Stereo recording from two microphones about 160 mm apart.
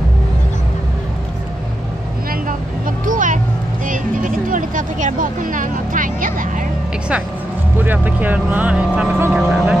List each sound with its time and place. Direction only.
3.1 s vehicle: 55° right (ahead or behind)
3.8 s a sound: 55° right (ahead or behind)
7.8 s speech: 10° right (ahead or behind)
9.4 s music: centre (ahead or behind)